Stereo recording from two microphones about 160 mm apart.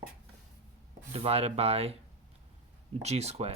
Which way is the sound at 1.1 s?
40° right (ahead or behind).